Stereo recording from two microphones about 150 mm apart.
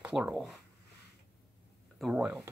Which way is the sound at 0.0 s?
5° right (ahead or behind).